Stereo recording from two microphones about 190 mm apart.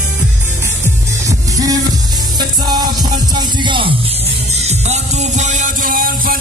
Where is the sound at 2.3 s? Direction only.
20° right (ahead or behind).